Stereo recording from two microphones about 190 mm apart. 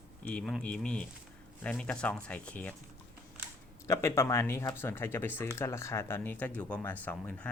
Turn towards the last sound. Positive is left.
turn(degrees=5)  # may be behind; listen again after turning